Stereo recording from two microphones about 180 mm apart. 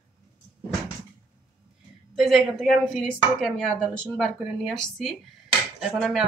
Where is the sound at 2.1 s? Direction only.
Centre (ahead or behind).